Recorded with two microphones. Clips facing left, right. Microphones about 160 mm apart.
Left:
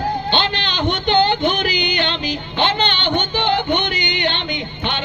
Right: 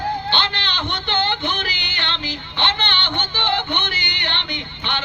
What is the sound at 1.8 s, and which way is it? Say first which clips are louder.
Music: left 8 dB; 15° left (ahead or behind).